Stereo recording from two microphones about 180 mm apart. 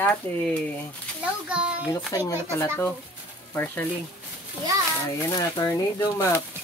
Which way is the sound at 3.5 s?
10° left (ahead or behind).